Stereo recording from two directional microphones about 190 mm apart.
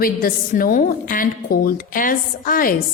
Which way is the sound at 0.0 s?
50° left (ahead or behind).